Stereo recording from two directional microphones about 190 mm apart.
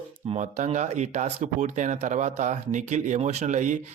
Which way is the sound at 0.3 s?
35° right (ahead or behind).